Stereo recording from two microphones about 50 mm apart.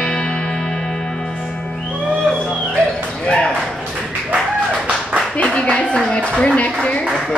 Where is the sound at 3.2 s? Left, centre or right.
Centre.